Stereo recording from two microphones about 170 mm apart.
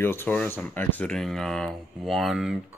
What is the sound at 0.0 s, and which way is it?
Speech, 15° left (ahead or behind).